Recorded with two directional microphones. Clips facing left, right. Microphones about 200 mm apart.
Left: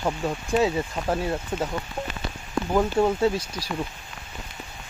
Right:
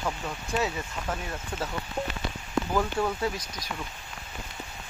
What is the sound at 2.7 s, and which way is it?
Speech, 25° left (ahead or behind).